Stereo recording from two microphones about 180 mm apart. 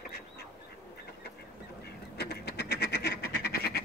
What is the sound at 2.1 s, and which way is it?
Frog, 65° left (ahead or behind).